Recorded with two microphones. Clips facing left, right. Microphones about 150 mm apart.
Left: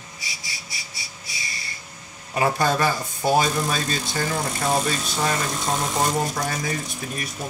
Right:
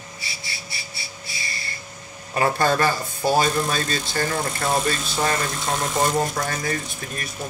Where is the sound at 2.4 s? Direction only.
10° left (ahead or behind).